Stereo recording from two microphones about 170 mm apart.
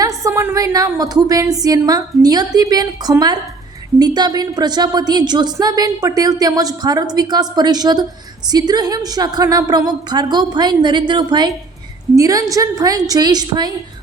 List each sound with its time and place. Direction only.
0.0 s a woman's voice: 20° right (ahead or behind)